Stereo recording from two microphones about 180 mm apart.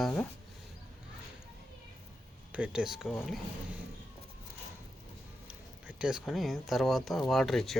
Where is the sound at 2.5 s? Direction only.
5° right (ahead or behind).